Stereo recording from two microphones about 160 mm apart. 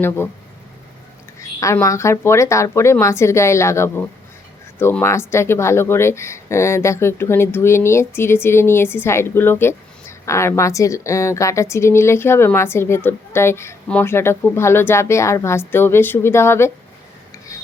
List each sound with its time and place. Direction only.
1.5 s speech: 20° left (ahead or behind)